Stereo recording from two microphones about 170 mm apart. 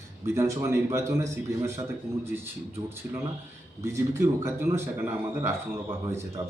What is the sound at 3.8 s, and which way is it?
Speech, 15° right (ahead or behind).